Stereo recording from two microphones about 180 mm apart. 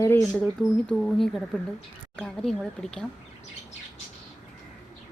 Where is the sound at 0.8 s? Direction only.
Centre (ahead or behind).